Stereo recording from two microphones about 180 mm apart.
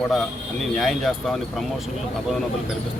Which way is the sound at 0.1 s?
Centre (ahead or behind).